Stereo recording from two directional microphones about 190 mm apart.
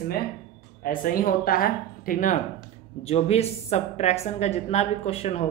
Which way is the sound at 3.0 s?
35° left (ahead or behind).